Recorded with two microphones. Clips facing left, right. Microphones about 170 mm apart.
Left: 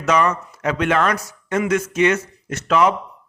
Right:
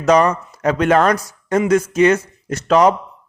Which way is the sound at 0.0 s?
35° right (ahead or behind).